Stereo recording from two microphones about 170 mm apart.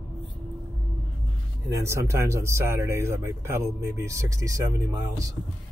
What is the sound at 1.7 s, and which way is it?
Speech, 15° right (ahead or behind).